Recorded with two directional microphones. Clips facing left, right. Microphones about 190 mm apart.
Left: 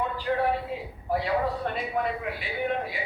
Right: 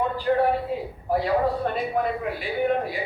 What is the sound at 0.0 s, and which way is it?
A man's voice, 45° right (ahead or behind).